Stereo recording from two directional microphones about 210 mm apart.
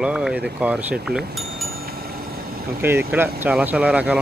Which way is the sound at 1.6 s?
45° right (ahead or behind).